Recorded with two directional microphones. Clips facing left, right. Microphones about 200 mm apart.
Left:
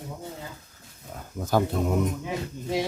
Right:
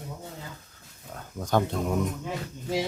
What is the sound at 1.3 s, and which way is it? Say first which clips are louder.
Speech: left 2 dB; 5° left (ahead or behind).